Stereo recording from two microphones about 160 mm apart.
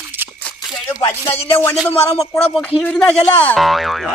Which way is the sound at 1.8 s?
5° left (ahead or behind).